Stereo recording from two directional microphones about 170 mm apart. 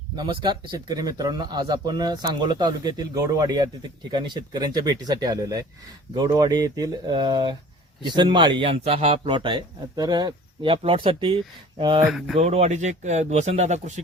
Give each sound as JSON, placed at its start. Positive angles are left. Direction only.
{"t": 0.2, "sound": "a man's voice", "side_deg": -30}
{"t": 12.0, "sound": "speech", "side_deg": 0}
{"t": 12.4, "sound": "speech", "side_deg": -40}